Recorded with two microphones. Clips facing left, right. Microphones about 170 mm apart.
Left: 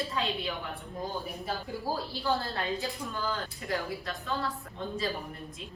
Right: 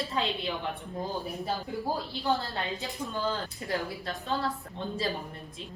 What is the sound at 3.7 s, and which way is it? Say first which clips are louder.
Speech: right 1 dB; 35° right (ahead or behind).